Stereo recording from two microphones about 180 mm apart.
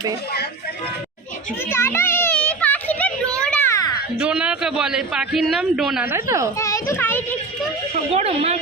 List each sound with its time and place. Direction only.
1.7 s a sound: 15° left (ahead or behind)
3.3 s children playing: 5° left (ahead or behind)
4.2 s a man's voice: 5° right (ahead or behind)
6.6 s a child's voice: 15° left (ahead or behind)
7.9 s a woman's voice: 35° right (ahead or behind)